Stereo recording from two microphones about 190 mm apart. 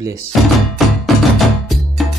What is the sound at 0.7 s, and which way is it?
Music, centre (ahead or behind).